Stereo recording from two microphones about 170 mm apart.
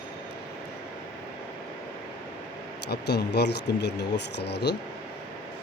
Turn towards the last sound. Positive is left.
turn(degrees=80)